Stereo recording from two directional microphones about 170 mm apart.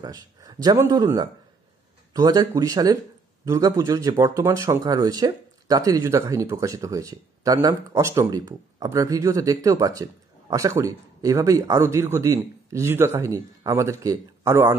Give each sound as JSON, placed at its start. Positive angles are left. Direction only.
{"t": 0.0, "sound": "speech", "side_deg": -20}